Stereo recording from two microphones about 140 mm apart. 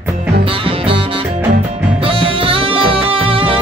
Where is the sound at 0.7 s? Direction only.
40° right (ahead or behind).